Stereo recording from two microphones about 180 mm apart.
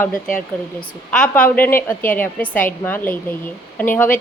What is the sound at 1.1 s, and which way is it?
Speech, 5° left (ahead or behind).